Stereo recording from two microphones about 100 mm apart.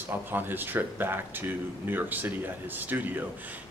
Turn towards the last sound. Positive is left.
turn(degrees=-20)  # may be behind; listen again after turning